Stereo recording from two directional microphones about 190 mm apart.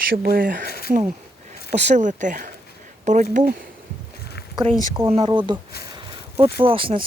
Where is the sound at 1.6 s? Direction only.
35° right (ahead or behind).